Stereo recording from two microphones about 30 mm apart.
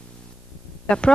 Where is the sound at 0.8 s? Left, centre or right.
Left.